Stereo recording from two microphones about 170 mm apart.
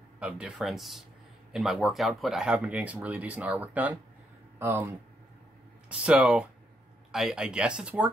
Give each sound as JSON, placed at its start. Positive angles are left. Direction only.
{"t": 0.2, "sound": "speech", "side_deg": -5}